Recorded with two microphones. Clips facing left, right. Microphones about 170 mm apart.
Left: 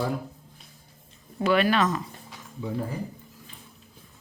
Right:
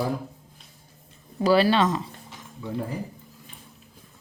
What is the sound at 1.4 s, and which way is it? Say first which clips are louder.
Speech: right 3 dB; 30° right (ahead or behind).